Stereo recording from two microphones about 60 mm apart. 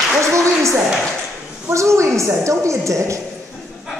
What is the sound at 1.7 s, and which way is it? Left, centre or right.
A woman's voice, right.